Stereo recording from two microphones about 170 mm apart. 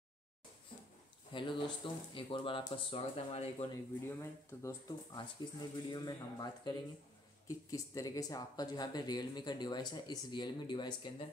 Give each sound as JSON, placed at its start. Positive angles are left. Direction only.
{"t": 1.3, "sound": "speech", "side_deg": 30}
{"t": 4.2, "sound": "speech", "side_deg": 20}